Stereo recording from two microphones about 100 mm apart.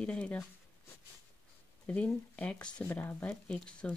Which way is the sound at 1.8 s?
15° left (ahead or behind).